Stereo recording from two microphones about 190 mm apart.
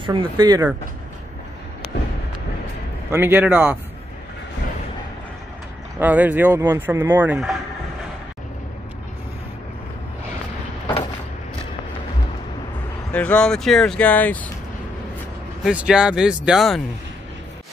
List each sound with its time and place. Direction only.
0.0 s speech: 25° right (ahead or behind)
3.1 s speech: 10° right (ahead or behind)
5.9 s speech: 10° right (ahead or behind)
13.1 s speech: 5° left (ahead or behind)
15.6 s speech: 5° right (ahead or behind)